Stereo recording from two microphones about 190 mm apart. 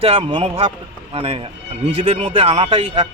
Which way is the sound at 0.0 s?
30° right (ahead or behind).